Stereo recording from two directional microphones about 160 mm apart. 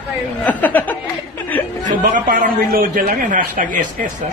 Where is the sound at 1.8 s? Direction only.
60° right (ahead or behind).